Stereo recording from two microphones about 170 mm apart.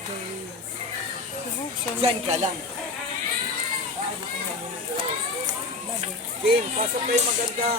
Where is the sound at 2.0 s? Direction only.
35° right (ahead or behind).